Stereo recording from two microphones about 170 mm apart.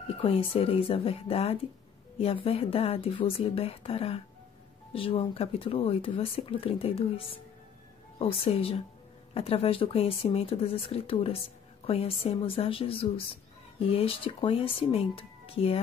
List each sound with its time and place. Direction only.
0.2 s speech: 35° left (ahead or behind)